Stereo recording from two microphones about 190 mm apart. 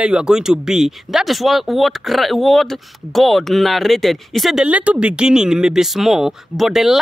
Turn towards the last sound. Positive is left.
turn(degrees=0)  # may be behind; listen again after turning